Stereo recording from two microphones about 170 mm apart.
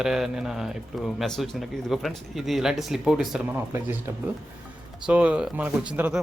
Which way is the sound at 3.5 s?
15° right (ahead or behind).